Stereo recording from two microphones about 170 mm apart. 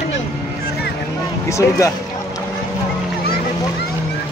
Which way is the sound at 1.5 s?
15° left (ahead or behind).